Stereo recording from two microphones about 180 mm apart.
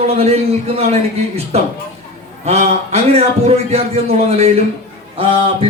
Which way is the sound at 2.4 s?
35° right (ahead or behind).